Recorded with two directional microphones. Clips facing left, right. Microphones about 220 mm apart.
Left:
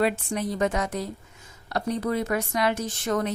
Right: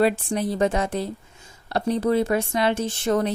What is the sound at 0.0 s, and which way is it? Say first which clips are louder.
Speech: right 4 dB; 30° right (ahead or behind).